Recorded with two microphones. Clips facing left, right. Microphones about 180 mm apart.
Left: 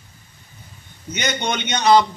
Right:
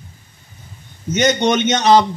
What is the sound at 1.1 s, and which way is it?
Speech, 45° right (ahead or behind).